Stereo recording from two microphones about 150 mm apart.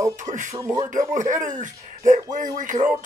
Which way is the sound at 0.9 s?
55° right (ahead or behind).